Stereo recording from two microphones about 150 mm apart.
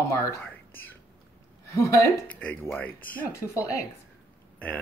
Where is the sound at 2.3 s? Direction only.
10° left (ahead or behind).